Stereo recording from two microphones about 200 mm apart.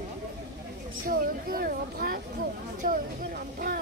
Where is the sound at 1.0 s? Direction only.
45° right (ahead or behind).